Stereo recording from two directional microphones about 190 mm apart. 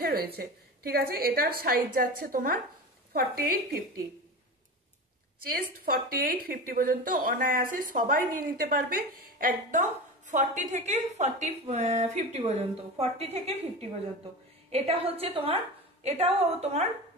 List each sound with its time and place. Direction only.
0.0 s a woman's voice: 55° right (ahead or behind)
5.9 s a woman's voice: 50° right (ahead or behind); by 16.9 s 35° right (ahead or behind)